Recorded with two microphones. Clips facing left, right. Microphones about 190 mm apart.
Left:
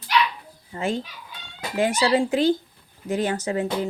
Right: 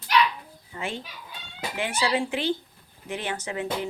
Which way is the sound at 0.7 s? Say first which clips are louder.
Left 7 dB; 40° left (ahead or behind).